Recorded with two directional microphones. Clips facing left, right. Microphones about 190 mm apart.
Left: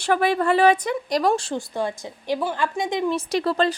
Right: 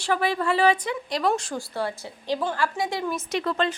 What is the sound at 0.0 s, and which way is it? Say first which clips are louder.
Speech: left 4 dB; 55° left (ahead or behind).